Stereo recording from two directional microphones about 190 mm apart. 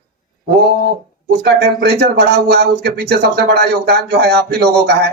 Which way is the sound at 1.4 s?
60° right (ahead or behind).